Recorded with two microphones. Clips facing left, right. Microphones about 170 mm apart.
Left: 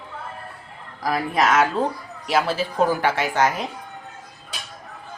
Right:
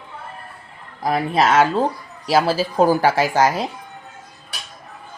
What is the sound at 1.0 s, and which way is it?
Speech, 30° right (ahead or behind).